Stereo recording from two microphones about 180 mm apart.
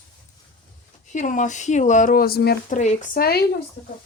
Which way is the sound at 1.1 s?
45° left (ahead or behind).